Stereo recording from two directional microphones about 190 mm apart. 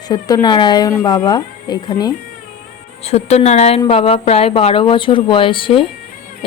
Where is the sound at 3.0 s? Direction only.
35° left (ahead or behind).